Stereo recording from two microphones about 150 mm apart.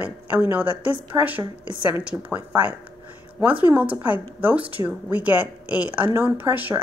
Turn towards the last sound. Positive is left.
turn(degrees=-10)  # may be behind; listen again after turning